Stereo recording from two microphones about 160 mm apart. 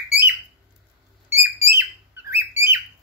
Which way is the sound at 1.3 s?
15° right (ahead or behind).